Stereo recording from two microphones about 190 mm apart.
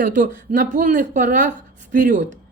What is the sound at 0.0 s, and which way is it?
Speech, 45° right (ahead or behind).